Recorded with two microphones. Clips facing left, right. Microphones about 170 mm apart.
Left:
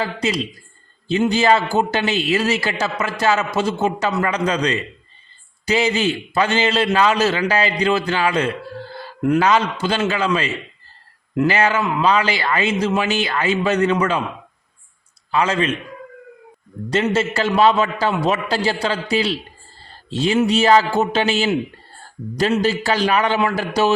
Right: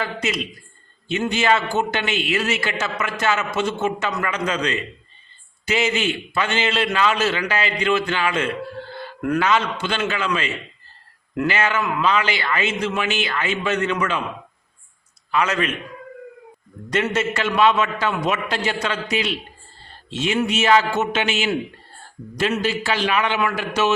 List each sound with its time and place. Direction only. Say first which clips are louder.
0.0 s a man's voice: left 3 dB; 35° left (ahead or behind)
15.3 s a man's voice: left 2 dB; 30° left (ahead or behind)
16.9 s a man's voice: left 3 dB; 30° left (ahead or behind)